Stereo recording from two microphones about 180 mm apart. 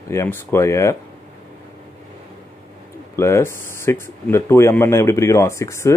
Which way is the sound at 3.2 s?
15° left (ahead or behind).